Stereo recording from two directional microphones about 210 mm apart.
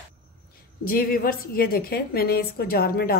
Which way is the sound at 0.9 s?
45° left (ahead or behind).